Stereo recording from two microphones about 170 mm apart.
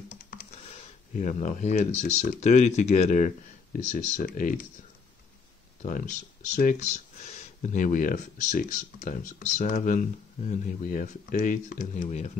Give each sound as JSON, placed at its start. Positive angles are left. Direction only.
{"t": 0.5, "sound": "speech", "side_deg": 40}
{"t": 3.9, "sound": "speech", "side_deg": 55}
{"t": 5.8, "sound": "speech", "side_deg": 45}